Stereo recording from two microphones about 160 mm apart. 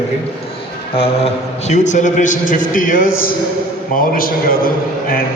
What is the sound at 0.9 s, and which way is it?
A man's voice, 35° left (ahead or behind).